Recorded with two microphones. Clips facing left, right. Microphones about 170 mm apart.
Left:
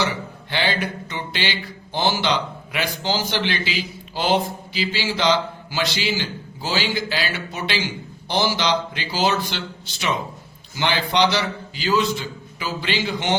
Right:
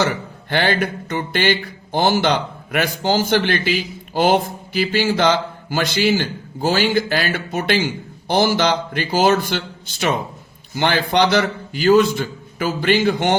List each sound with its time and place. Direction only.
0.0 s music: 50° right (ahead or behind)